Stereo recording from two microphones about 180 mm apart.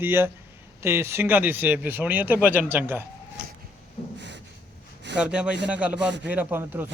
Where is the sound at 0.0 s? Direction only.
10° right (ahead or behind).